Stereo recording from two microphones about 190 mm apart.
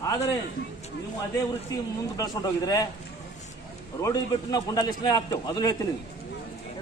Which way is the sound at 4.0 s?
20° left (ahead or behind).